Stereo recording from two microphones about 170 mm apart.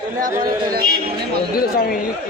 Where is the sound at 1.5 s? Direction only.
60° left (ahead or behind).